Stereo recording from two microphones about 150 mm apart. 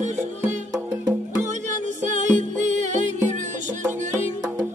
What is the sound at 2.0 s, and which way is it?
Music, 55° right (ahead or behind).